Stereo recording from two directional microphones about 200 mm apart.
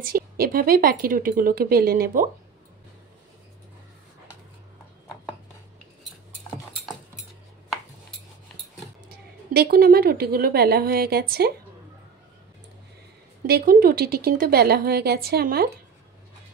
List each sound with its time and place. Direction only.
0.0 s speech: 45° right (ahead or behind)
9.5 s speech: 50° right (ahead or behind)
13.5 s speech: 50° right (ahead or behind)